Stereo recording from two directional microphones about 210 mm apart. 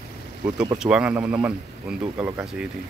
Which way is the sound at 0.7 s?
5° right (ahead or behind).